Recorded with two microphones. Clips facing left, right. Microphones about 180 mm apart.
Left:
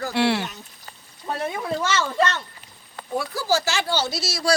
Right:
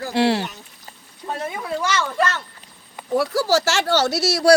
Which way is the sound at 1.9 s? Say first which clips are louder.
Right 2 dB; 25° left (ahead or behind).